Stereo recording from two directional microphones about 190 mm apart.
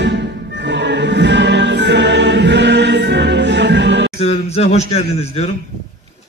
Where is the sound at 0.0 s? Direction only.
65° right (ahead or behind).